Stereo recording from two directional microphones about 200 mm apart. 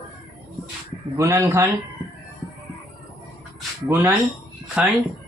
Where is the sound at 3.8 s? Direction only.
10° right (ahead or behind).